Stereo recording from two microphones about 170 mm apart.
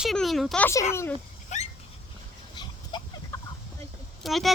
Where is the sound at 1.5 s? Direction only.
45° left (ahead or behind).